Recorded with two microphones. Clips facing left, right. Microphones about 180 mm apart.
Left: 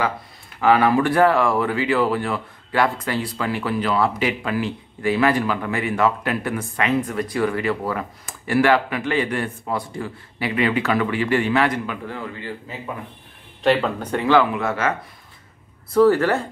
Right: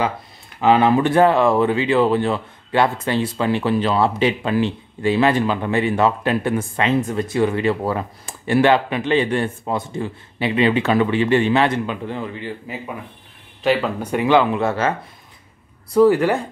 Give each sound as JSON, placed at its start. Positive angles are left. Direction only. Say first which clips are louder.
{"t": 0.6, "sound": "speech", "louder": "right 2 dB", "side_deg": -20}
{"t": 13.6, "sound": "speech", "louder": "even", "side_deg": -5}
{"t": 15.9, "sound": "speech", "louder": "right 1 dB", "side_deg": -15}